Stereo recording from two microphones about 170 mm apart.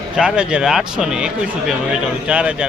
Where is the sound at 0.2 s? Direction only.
5° right (ahead or behind).